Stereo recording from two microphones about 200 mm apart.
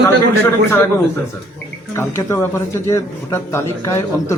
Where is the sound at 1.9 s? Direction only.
15° left (ahead or behind).